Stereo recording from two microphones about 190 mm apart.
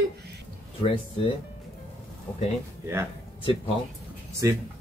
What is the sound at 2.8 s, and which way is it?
Speech, 15° right (ahead or behind).